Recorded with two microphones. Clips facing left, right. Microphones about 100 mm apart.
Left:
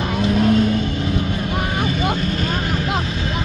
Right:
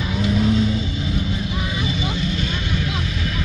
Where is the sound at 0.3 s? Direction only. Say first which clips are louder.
Left 3 dB; 55° left (ahead or behind).